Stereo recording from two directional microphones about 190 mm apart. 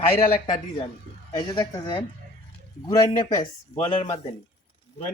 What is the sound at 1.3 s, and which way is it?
Speech, 20° left (ahead or behind).